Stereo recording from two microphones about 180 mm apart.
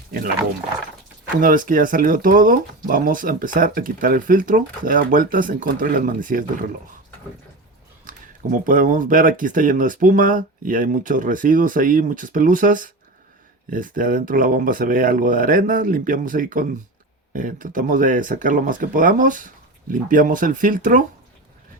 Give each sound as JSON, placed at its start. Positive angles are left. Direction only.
{"t": 1.4, "sound": "speech", "side_deg": -50}
{"t": 8.0, "sound": "speech", "side_deg": -50}